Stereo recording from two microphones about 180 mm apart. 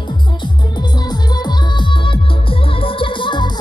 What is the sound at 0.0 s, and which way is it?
Music, 25° left (ahead or behind).